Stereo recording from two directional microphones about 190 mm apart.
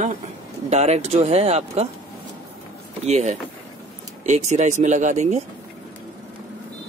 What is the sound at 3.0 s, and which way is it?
Speech, 35° right (ahead or behind).